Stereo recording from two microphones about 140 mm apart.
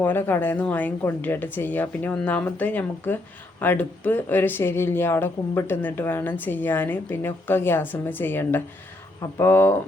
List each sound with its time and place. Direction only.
0.0 s speech: 15° left (ahead or behind)